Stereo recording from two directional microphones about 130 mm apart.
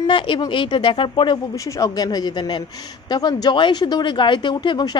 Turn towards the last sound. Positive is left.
turn(degrees=35)  # may be behind; listen again after turning